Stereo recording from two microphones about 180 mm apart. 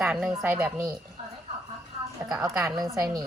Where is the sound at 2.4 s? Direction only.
15° right (ahead or behind).